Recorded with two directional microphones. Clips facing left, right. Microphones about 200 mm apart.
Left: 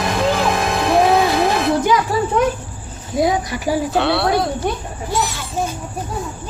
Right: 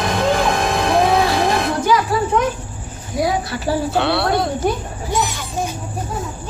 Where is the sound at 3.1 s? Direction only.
20° left (ahead or behind).